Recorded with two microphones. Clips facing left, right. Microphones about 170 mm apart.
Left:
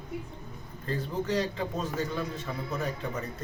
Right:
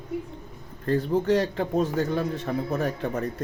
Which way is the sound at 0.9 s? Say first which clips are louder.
Right 9 dB; 55° right (ahead or behind).